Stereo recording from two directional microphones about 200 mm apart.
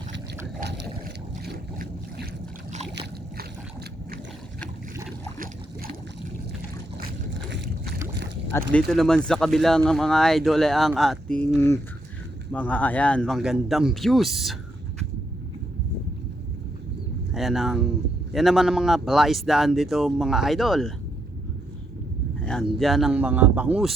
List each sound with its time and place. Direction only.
1.0 s boat: 50° right (ahead or behind)
8.5 s speech: 10° left (ahead or behind)
17.3 s speech: centre (ahead or behind)
22.8 s speech: centre (ahead or behind)